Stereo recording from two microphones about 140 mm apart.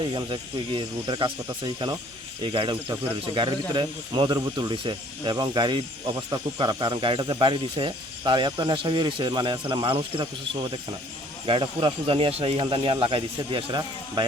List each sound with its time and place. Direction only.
0.1 s speech: 35° right (ahead or behind)